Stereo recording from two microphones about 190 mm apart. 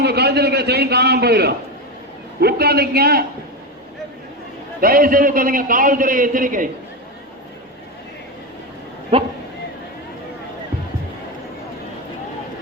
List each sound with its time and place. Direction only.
0.0 s a man's voice: 60° right (ahead or behind)
4.8 s a man's voice: 50° right (ahead or behind)
9.1 s speech: 30° right (ahead or behind)